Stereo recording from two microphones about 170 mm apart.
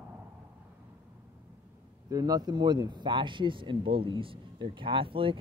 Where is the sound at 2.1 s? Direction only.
20° right (ahead or behind).